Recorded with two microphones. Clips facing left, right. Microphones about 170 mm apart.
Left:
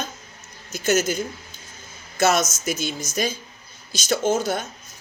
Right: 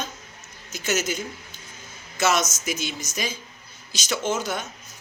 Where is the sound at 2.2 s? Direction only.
55° left (ahead or behind).